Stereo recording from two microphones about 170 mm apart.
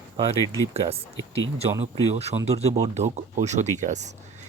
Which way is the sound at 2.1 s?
40° right (ahead or behind).